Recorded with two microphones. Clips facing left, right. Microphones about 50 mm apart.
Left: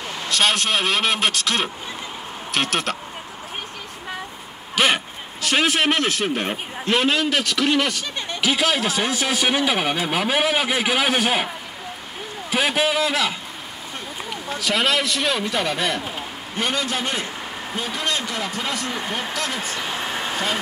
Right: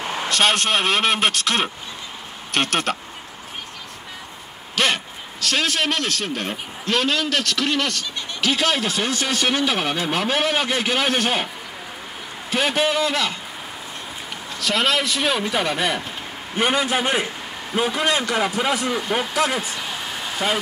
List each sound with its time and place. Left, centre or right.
0.0 s vehicle: right
0.3 s speech: centre
4.7 s a man's voice: centre
12.4 s speech: centre
14.6 s a man's voice: centre
19.8 s a sound: left